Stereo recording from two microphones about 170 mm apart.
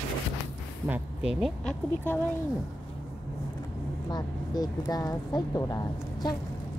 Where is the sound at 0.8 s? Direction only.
5° right (ahead or behind).